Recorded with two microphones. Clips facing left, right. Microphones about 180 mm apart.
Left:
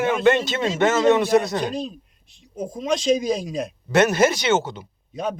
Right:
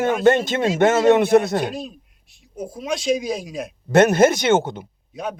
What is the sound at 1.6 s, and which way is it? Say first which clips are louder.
Speech: even; 5° right (ahead or behind).